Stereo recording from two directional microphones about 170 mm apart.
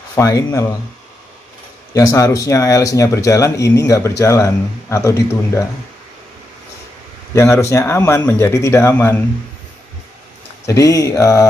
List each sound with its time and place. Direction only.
0.1 s speech: 20° left (ahead or behind)
2.0 s speech: 20° left (ahead or behind)
7.3 s speech: 15° left (ahead or behind)
10.7 s speech: 20° left (ahead or behind)